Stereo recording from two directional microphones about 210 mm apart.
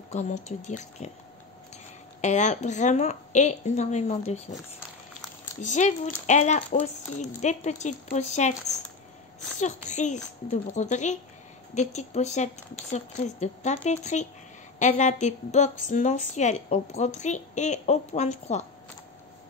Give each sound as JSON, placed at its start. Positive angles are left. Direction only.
{"t": 0.1, "sound": "a woman's voice", "side_deg": 35}
{"t": 2.2, "sound": "a woman's voice", "side_deg": 35}
{"t": 5.6, "sound": "a woman's voice", "side_deg": 35}
{"t": 9.6, "sound": "a woman's voice", "side_deg": 35}